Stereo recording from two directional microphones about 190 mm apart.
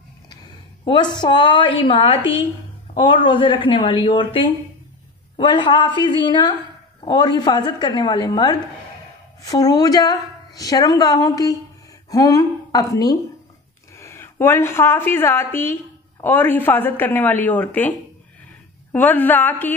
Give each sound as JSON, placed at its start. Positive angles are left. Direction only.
{"t": 0.8, "sound": "a woman's voice", "side_deg": 25}